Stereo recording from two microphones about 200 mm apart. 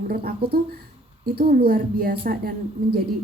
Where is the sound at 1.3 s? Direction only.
50° right (ahead or behind).